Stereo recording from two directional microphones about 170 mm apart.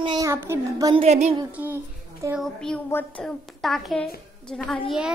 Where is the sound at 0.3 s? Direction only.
15° right (ahead or behind).